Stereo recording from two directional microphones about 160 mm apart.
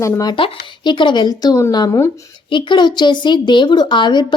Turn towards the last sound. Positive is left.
turn(degrees=30)  # may be behind; listen again after turning